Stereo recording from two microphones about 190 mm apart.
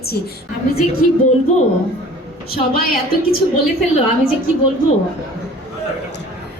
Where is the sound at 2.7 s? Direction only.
50° left (ahead or behind).